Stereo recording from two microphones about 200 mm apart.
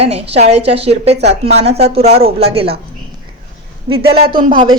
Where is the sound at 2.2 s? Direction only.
30° right (ahead or behind).